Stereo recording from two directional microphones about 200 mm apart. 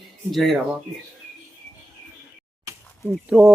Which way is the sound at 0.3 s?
Centre (ahead or behind).